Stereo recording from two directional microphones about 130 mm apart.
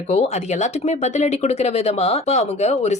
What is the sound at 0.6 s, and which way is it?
Speech, 65° left (ahead or behind).